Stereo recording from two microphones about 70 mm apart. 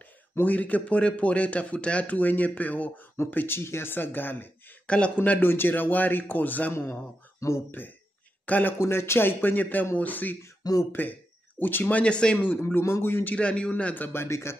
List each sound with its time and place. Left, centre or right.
0.4 s speech: left
4.8 s speech: centre
6.7 s a man's voice: left
8.5 s speech: left
8.7 s a man's voice: left
10.6 s speech: left
10.9 s speech: left
12.4 s a man's voice: left
13.4 s speech: centre; by 14.6 s left